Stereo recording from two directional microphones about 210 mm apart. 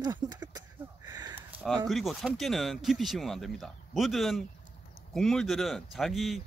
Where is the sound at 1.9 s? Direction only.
Centre (ahead or behind).